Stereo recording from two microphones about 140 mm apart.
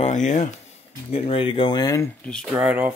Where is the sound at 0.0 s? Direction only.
60° left (ahead or behind).